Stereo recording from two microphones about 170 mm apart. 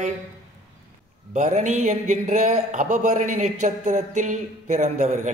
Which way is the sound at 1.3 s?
45° right (ahead or behind).